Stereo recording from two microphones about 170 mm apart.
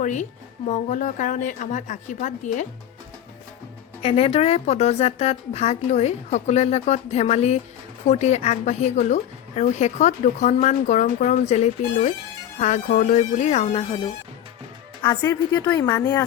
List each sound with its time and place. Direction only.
0.0 s a woman's voice: 45° left (ahead or behind)
4.0 s a woman's voice: 35° left (ahead or behind)
15.0 s a woman's voice: 15° left (ahead or behind)